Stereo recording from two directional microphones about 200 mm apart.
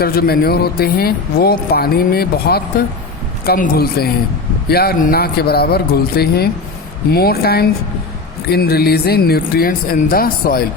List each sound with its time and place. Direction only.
0.0 s speech: 50° left (ahead or behind)